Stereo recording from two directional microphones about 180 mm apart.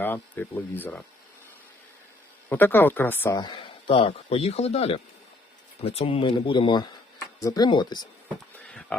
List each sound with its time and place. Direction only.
0.0 s speech: 10° left (ahead or behind)
2.5 s speech: 10° left (ahead or behind)
3.4 s speech: 25° left (ahead or behind)
8.5 s a sound: 5° left (ahead or behind)